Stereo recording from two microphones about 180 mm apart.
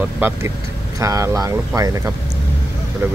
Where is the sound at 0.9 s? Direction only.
15° right (ahead or behind).